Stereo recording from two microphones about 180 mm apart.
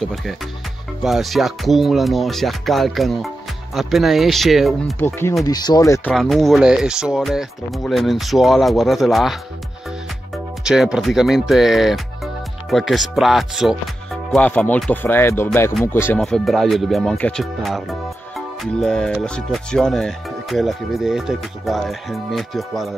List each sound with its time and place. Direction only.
0.0 s speech: centre (ahead or behind)
4.9 s speech: 10° left (ahead or behind)
6.1 s speech: centre (ahead or behind)
10.6 s speech: 5° right (ahead or behind); by 16.2 s 10° left (ahead or behind)
16.2 s speech: centre (ahead or behind)